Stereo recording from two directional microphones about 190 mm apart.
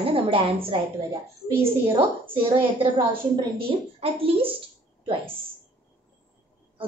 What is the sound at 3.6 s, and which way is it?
A woman's voice, 30° right (ahead or behind).